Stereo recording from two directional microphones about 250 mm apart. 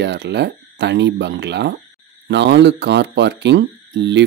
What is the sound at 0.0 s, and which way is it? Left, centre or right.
A man's voice, right.